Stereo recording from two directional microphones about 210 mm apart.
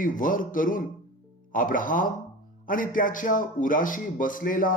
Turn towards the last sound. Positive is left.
turn(degrees=40)  # may be behind; listen again after turning